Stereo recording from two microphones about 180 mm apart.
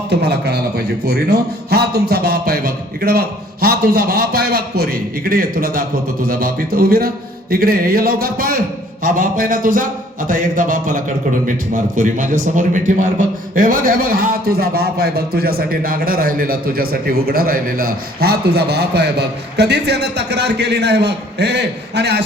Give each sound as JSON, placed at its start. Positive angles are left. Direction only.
{"t": 0.1, "sound": "a man's voice", "side_deg": -65}